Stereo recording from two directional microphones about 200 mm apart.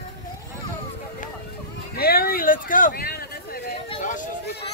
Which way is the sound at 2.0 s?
50° left (ahead or behind).